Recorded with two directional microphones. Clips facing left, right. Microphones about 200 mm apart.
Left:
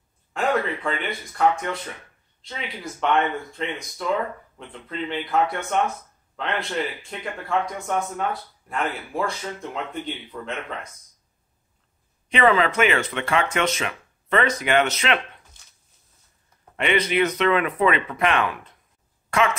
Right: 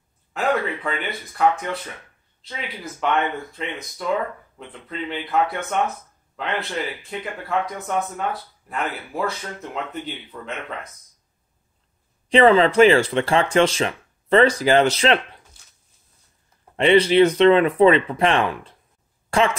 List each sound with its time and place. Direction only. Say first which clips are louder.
0.3 s speech: right 1 dB; 5° right (ahead or behind)
12.3 s speech: right 5 dB; 30° right (ahead or behind)
16.7 s a woman's voice: right 7 dB; 30° right (ahead or behind)